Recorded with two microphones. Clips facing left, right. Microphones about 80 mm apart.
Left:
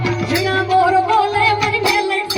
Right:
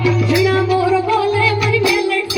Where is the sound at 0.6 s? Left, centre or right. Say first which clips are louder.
Left 1 dB; left.